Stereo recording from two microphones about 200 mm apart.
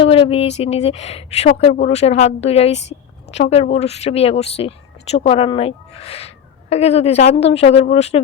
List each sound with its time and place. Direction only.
0.0 s a woman's voice: 30° left (ahead or behind)